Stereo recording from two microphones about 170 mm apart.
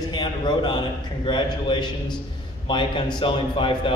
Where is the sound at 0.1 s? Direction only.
25° left (ahead or behind).